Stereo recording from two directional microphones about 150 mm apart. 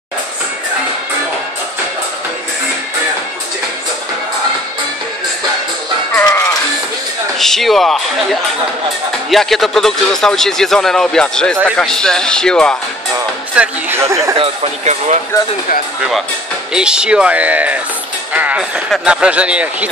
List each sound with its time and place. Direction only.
6.2 s music: 20° left (ahead or behind)
7.3 s speech: centre (ahead or behind)
13.6 s speech: 15° right (ahead or behind)
14.3 s speech: 40° right (ahead or behind)
16.7 s speech: 5° right (ahead or behind)